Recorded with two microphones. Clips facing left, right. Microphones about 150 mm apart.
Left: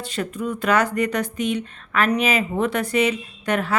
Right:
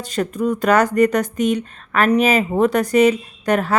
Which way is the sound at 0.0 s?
40° right (ahead or behind).